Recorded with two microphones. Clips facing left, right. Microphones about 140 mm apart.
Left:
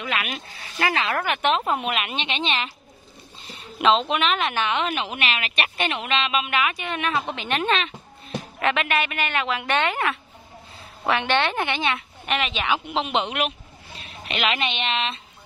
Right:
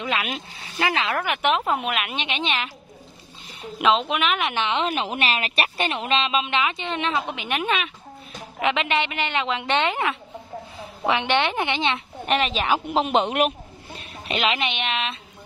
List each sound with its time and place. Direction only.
0.2 s speech: 15° right (ahead or behind)
1.7 s speech: 5° right (ahead or behind)
3.8 s speech: 5° right (ahead or behind)
12.3 s speech: 35° right (ahead or behind)
14.5 s speech: 15° right (ahead or behind)